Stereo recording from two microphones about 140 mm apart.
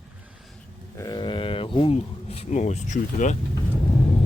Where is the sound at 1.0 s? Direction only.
30° left (ahead or behind); by 3.4 s 60° left (ahead or behind).